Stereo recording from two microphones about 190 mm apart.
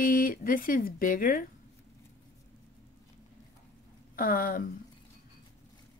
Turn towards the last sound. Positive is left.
turn(degrees=45)  # may be behind; listen again after turning